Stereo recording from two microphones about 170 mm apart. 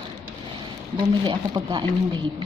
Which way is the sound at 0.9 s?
25° right (ahead or behind).